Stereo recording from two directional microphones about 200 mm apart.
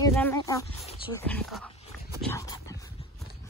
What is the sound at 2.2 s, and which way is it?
Dog, 15° left (ahead or behind).